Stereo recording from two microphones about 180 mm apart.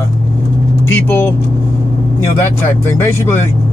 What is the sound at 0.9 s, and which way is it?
Speech, 10° left (ahead or behind).